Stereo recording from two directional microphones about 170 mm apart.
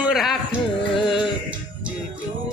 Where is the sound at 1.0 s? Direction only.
Centre (ahead or behind).